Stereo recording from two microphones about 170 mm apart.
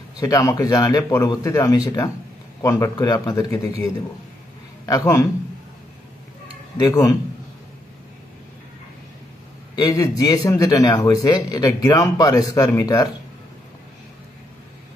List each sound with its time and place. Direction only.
0.2 s a man's voice: 20° left (ahead or behind)
4.8 s a man's voice: 20° left (ahead or behind)
6.8 s a man's voice: 20° left (ahead or behind)
9.8 s a man's voice: 20° left (ahead or behind)